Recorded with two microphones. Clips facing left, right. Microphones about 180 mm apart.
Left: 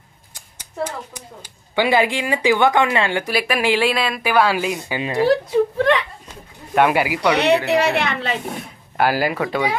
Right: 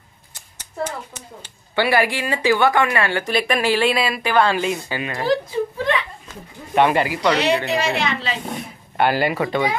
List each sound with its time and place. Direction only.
0.3 s speech: 10° left (ahead or behind)
5.5 s speech: 65° left (ahead or behind)
6.7 s speech: 5° left (ahead or behind)
7.3 s a woman's voice: 65° left (ahead or behind)
8.5 s speech: centre (ahead or behind)